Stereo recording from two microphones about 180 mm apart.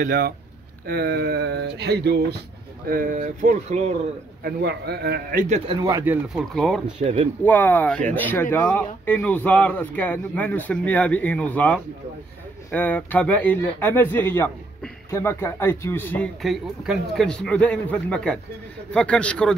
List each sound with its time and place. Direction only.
0.0 s speech: 50° right (ahead or behind)
2.9 s speech: 50° right (ahead or behind)
4.4 s speech: 60° right (ahead or behind)
5.7 s speech: 20° right (ahead or behind)
6.2 s a man's voice: centre (ahead or behind)
7.0 s speech: 40° right (ahead or behind)
7.4 s speech: 10° left (ahead or behind)
16.4 s a man's voice: centre (ahead or behind)